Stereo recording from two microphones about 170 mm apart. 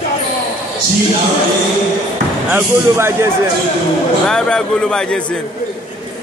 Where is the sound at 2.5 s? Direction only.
15° right (ahead or behind).